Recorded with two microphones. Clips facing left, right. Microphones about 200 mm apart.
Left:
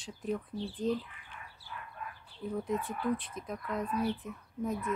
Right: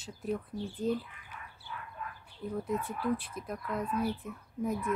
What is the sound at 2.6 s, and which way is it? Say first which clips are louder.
Speech: right 1 dB; 5° right (ahead or behind).